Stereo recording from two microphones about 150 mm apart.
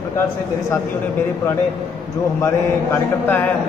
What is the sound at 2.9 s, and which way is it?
Speech, 15° left (ahead or behind).